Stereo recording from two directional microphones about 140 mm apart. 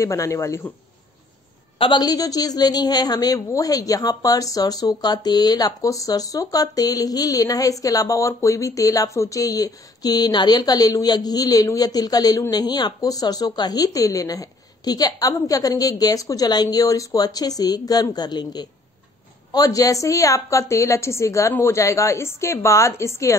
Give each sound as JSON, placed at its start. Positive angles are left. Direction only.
{"t": 0.0, "sound": "a woman's voice", "side_deg": 20}
{"t": 1.8, "sound": "a woman's voice", "side_deg": 35}